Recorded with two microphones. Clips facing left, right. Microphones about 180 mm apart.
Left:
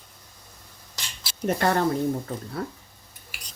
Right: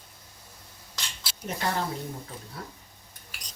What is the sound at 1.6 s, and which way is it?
Speech, 60° left (ahead or behind).